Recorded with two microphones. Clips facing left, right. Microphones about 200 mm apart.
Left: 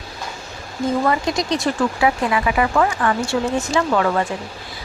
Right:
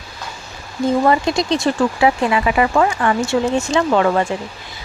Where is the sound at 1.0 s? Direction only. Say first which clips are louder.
Right 4 dB; 25° right (ahead or behind).